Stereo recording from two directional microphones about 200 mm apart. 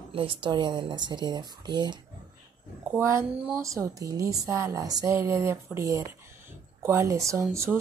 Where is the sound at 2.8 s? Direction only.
10° right (ahead or behind).